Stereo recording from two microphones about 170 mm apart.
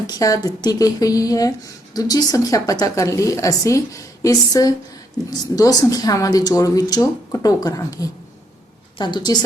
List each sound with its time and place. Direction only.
0.1 s speech: 20° left (ahead or behind)